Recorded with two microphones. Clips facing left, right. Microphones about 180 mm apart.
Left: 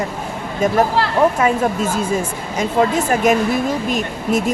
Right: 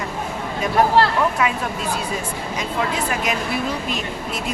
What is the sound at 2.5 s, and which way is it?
Speech, 45° left (ahead or behind).